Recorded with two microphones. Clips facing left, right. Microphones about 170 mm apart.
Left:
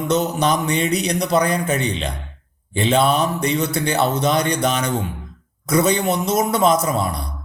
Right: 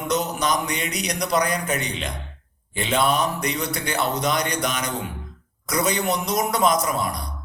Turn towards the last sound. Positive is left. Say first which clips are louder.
# left 4 dB
turn(degrees=30)  # may be behind; listen again after turning